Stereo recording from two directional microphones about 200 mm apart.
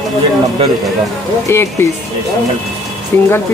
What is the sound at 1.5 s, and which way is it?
Speech, 15° left (ahead or behind).